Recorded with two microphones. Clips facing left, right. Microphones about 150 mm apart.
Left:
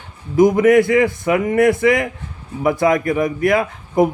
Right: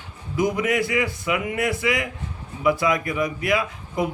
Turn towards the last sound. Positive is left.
turn(degrees=50)  # may be behind; listen again after turning